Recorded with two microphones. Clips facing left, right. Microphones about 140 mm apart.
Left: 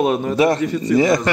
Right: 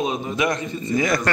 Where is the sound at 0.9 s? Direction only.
25° left (ahead or behind).